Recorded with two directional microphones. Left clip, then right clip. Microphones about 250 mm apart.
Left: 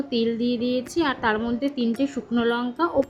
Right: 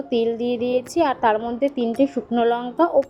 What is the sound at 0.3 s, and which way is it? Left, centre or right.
Speech, right.